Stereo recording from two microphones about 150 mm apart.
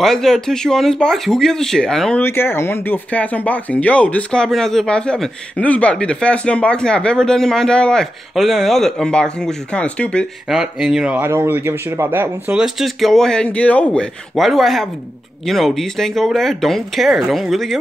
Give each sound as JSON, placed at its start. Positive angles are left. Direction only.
{"t": 0.0, "sound": "speech", "side_deg": 0}
{"t": 2.2, "sound": "speech", "side_deg": 15}
{"t": 10.5, "sound": "speech", "side_deg": -5}